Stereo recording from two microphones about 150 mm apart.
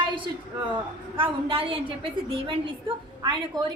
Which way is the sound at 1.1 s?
35° right (ahead or behind).